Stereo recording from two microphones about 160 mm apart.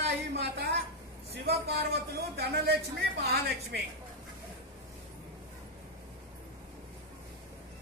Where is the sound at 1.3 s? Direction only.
85° right.